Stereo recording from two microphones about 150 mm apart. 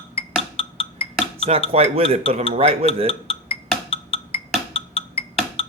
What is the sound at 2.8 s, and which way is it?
Dishes, 40° left (ahead or behind).